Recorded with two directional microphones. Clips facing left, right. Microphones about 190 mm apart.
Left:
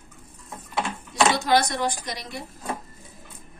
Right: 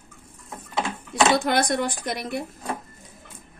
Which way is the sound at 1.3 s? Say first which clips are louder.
Right 1 dB; 55° right (ahead or behind).